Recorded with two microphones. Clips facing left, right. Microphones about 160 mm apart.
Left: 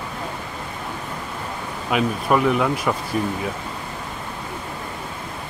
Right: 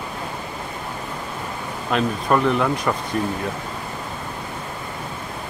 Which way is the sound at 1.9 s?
5° left (ahead or behind).